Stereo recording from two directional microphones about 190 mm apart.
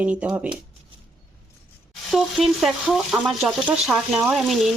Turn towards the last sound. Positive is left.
turn(degrees=0)  # may be behind; listen again after turning